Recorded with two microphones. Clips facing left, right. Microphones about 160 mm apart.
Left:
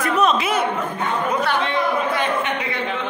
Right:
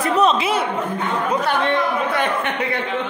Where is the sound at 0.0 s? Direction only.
30° right (ahead or behind).